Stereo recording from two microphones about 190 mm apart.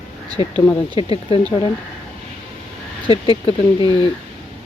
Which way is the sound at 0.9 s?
30° left (ahead or behind).